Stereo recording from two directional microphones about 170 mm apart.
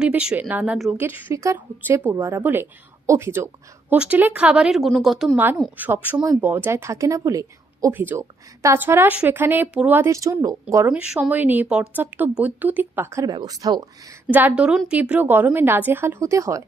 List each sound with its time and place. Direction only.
0.0 s speech: 5° right (ahead or behind)
6.1 s speech: 25° right (ahead or behind)
6.4 s speech: 15° right (ahead or behind)
14.2 s speech: 10° right (ahead or behind)